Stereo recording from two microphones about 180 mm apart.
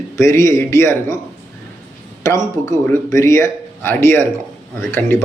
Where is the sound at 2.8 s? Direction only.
15° left (ahead or behind).